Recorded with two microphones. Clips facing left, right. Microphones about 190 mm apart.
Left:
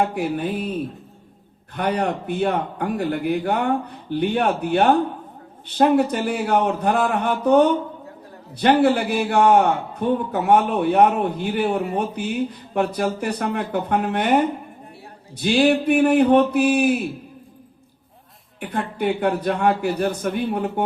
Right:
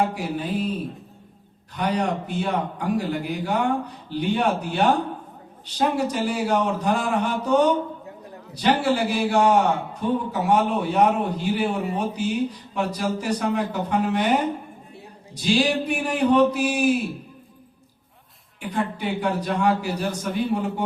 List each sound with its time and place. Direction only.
0.0 s a man's voice: 55° left (ahead or behind)
1.7 s a man's voice: 55° left (ahead or behind)
18.6 s a man's voice: 60° left (ahead or behind)